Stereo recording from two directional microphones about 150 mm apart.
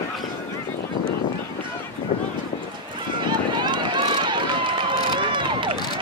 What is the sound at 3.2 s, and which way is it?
Run, 30° right (ahead or behind).